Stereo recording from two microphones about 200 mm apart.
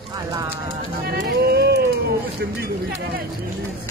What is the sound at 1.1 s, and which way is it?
Run, 50° right (ahead or behind).